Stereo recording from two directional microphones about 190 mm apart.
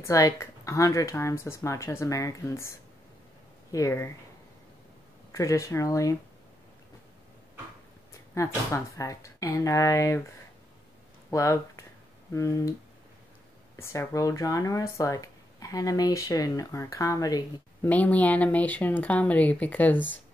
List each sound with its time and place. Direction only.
0.0 s speech: 15° left (ahead or behind)
3.7 s speech: 15° left (ahead or behind)
5.3 s speech: 15° left (ahead or behind)
8.4 s speech: 15° left (ahead or behind)
11.2 s speech: 15° left (ahead or behind)
13.7 s speech: 15° left (ahead or behind)
17.8 s speech: 10° left (ahead or behind)